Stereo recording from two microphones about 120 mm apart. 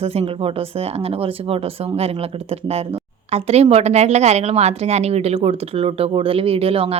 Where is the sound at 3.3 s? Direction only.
60° right (ahead or behind).